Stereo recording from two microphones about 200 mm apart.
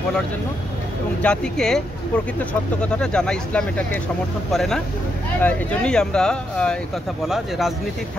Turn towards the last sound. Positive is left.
turn(degrees=0)  # may be behind; listen again after turning